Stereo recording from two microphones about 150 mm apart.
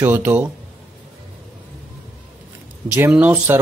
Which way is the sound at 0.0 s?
10° right (ahead or behind).